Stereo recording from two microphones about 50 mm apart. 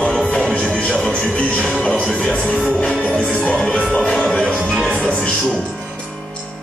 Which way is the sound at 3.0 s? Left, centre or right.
Centre.